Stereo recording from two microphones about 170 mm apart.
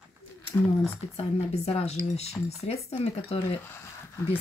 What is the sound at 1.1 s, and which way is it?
Speech, 40° left (ahead or behind).